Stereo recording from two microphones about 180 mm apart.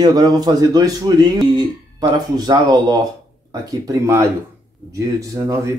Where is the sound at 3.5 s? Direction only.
20° right (ahead or behind).